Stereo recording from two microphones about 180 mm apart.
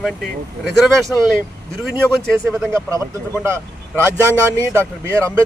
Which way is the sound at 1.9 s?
15° right (ahead or behind).